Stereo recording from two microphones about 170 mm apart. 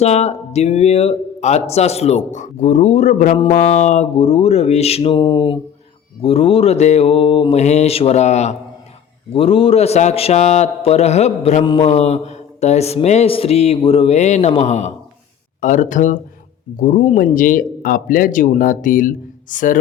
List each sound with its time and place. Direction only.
0.0 s speech: 40° left (ahead or behind)